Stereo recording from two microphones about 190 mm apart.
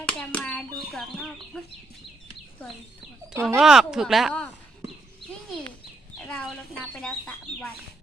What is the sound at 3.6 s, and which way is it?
Speech, centre (ahead or behind).